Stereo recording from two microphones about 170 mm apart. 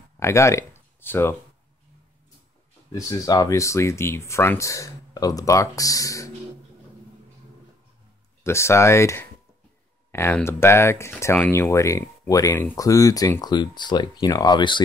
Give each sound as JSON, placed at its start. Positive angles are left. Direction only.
{"t": 0.2, "sound": "speech", "side_deg": 15}
{"t": 2.9, "sound": "speech", "side_deg": 20}
{"t": 8.5, "sound": "speech", "side_deg": 15}